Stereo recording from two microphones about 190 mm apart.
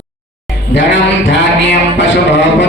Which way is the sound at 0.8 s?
75° left (ahead or behind).